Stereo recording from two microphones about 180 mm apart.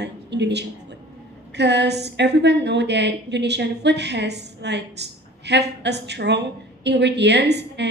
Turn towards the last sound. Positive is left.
turn(degrees=-70)  # may be behind; listen again after turning